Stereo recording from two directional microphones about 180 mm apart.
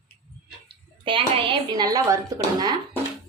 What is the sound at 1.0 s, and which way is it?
A woman's voice, 30° right (ahead or behind).